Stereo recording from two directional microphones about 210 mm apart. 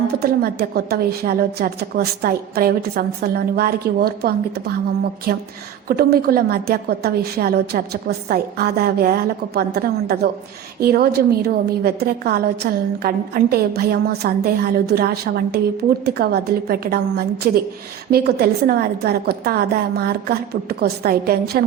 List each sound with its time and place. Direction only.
0.2 s a woman's voice: 45° right (ahead or behind)
5.9 s a woman's voice: 45° right (ahead or behind)